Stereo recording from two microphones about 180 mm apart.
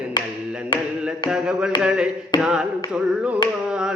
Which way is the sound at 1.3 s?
5° right (ahead or behind).